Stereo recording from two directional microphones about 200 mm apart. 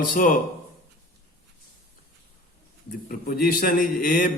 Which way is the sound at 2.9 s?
45° left (ahead or behind).